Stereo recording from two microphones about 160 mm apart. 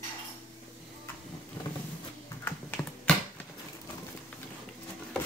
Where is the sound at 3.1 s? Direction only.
5° left (ahead or behind).